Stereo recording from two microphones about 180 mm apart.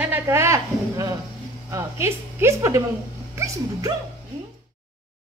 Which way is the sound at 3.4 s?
20° right (ahead or behind).